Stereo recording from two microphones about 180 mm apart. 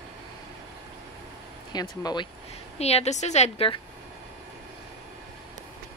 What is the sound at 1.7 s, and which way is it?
Speech, 20° left (ahead or behind).